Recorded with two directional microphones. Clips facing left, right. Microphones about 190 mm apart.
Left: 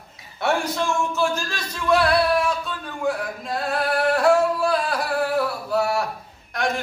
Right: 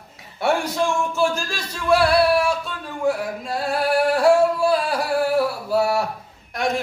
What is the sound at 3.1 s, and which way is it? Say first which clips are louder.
Singing: right 1 dB; 5° right (ahead or behind).